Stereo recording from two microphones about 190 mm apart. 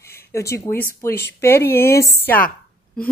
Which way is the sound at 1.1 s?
60° left (ahead or behind).